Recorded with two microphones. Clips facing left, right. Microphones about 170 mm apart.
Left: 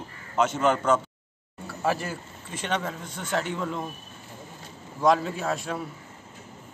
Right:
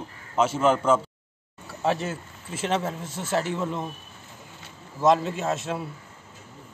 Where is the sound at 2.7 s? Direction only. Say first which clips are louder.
Right 2 dB; 25° right (ahead or behind).